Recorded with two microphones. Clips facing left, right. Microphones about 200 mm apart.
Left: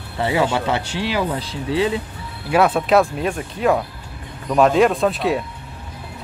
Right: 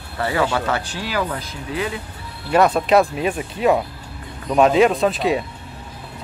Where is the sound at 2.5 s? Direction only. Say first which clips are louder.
Even; 5° left (ahead or behind).